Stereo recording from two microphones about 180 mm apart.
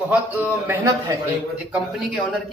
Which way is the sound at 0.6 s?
15° right (ahead or behind).